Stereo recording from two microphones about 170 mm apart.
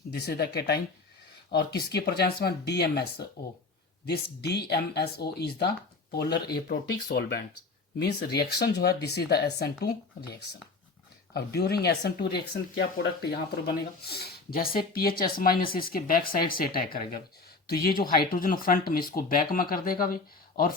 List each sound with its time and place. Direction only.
0.1 s speech: 70° left (ahead or behind)
6.2 s speech: 25° left (ahead or behind)
6.7 s speech: 70° left (ahead or behind)
11.3 s speech: 70° left (ahead or behind)